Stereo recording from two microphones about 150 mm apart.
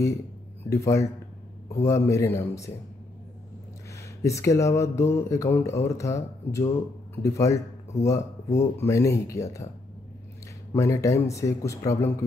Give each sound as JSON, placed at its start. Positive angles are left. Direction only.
{"t": 0.7, "sound": "speech", "side_deg": 20}
{"t": 4.2, "sound": "speech", "side_deg": 20}
{"t": 10.7, "sound": "speech", "side_deg": 20}